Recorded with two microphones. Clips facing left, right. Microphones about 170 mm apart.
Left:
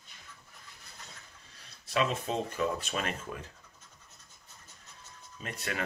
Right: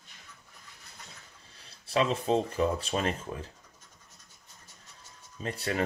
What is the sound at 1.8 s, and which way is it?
Speech, 30° right (ahead or behind).